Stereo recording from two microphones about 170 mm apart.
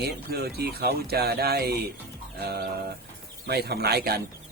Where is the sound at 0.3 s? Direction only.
65° right (ahead or behind).